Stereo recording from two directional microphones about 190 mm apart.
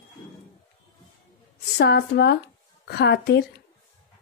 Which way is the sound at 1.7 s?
60° left (ahead or behind).